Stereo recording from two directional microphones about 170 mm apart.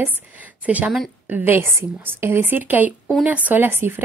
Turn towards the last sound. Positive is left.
turn(degrees=-10)  # may be behind; listen again after turning